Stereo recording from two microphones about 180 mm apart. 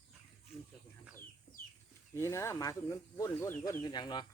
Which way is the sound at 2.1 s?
15° left (ahead or behind).